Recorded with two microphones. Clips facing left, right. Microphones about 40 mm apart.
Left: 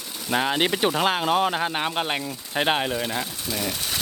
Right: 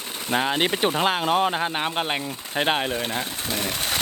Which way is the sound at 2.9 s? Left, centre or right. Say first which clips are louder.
Even; right.